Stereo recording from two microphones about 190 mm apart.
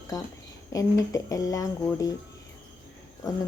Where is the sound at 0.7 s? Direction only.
20° left (ahead or behind).